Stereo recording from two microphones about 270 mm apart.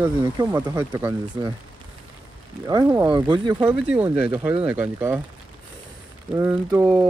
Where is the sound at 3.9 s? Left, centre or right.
Centre.